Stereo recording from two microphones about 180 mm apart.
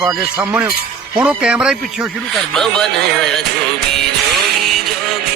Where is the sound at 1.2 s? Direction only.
5° right (ahead or behind).